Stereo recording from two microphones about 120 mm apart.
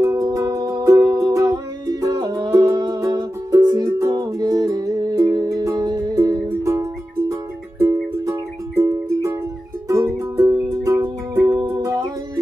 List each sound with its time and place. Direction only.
0.0 s music: 25° right (ahead or behind)